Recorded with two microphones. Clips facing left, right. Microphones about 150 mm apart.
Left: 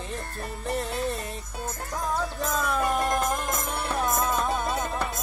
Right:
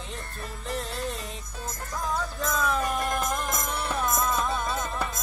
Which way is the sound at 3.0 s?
35° left (ahead or behind).